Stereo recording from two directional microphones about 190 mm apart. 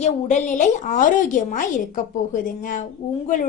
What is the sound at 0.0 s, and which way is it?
A woman's voice, 40° left (ahead or behind).